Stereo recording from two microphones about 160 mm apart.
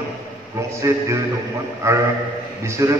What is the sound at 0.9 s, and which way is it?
Speech, 15° right (ahead or behind).